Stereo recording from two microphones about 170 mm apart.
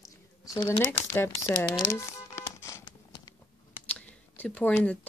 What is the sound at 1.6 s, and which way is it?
Crumpling, 15° left (ahead or behind).